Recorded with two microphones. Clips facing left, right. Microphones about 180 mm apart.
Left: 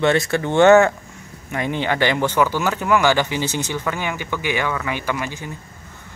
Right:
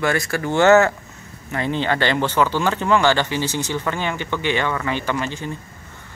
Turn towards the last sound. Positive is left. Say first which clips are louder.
# right 1 dB
turn(degrees=10)  # may be behind; listen again after turning